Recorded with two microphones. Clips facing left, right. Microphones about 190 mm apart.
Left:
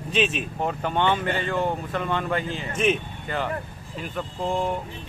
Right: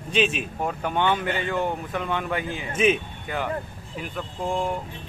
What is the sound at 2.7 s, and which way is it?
Speech, centre (ahead or behind).